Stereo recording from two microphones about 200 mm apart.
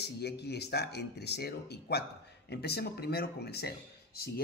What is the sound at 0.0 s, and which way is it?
A man's voice, 55° left (ahead or behind).